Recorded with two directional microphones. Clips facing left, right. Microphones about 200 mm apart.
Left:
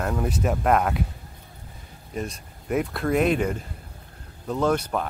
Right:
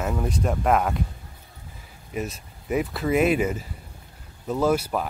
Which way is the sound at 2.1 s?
5° right (ahead or behind).